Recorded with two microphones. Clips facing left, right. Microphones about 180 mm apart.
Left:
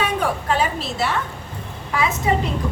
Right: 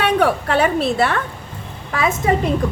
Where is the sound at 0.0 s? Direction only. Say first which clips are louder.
Right 6 dB; 65° right (ahead or behind).